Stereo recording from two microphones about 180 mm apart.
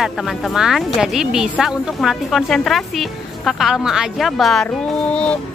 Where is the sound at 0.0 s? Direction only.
Centre (ahead or behind).